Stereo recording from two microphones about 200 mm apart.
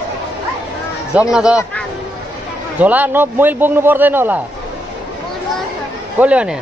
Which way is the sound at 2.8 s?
10° right (ahead or behind).